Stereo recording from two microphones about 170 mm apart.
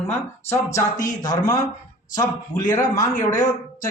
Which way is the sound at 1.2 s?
20° left (ahead or behind).